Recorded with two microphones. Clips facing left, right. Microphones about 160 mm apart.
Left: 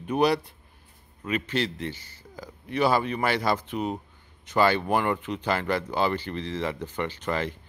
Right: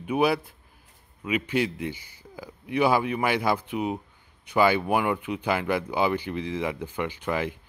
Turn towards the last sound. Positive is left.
turn(degrees=-10)  # may be behind; listen again after turning